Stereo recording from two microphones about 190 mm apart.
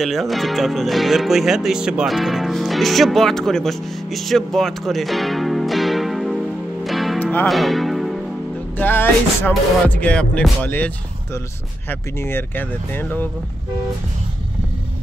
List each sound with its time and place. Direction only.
0.0 s speech: centre (ahead or behind)
8.7 s speech: 10° left (ahead or behind)
11.9 s speech: 10° left (ahead or behind)